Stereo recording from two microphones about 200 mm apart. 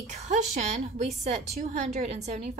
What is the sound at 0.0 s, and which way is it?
A woman's voice, 35° right (ahead or behind).